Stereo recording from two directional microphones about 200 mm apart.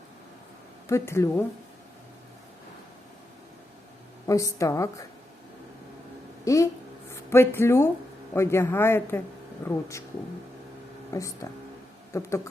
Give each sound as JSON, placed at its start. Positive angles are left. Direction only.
{"t": 0.9, "sound": "speech", "side_deg": 15}
{"t": 4.3, "sound": "speech", "side_deg": 15}
{"t": 6.4, "sound": "speech", "side_deg": 15}
{"t": 11.1, "sound": "speech", "side_deg": 15}